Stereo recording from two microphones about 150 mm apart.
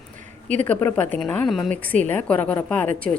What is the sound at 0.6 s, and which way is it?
A woman's voice, 10° left (ahead or behind).